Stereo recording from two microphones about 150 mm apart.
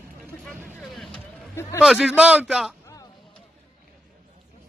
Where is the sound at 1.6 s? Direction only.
15° left (ahead or behind).